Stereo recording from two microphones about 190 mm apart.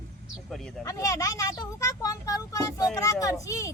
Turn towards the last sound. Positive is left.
turn(degrees=15)  # may be behind; listen again after turning